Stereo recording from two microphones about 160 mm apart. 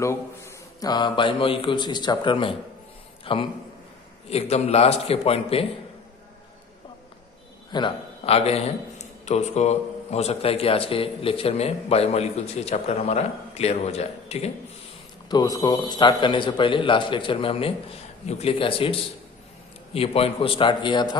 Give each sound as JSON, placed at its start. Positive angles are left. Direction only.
{"t": 0.0, "sound": "a man's voice", "side_deg": 15}
{"t": 7.7, "sound": "a man's voice", "side_deg": 35}
{"t": 15.2, "sound": "a man's voice", "side_deg": 25}